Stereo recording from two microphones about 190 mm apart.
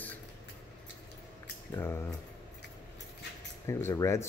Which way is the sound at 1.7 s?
10° left (ahead or behind).